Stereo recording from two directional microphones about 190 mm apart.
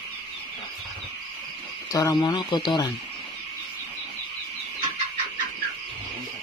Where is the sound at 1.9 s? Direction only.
20° left (ahead or behind).